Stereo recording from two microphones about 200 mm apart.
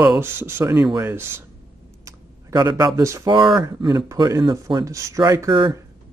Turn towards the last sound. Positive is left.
turn(degrees=-20)  # may be behind; listen again after turning